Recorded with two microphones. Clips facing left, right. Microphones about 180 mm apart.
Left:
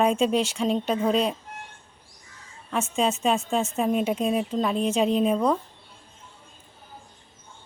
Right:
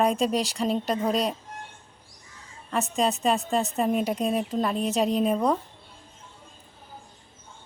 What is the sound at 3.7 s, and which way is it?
Speech, centre (ahead or behind).